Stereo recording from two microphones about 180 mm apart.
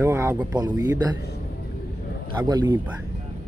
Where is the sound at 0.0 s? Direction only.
15° right (ahead or behind).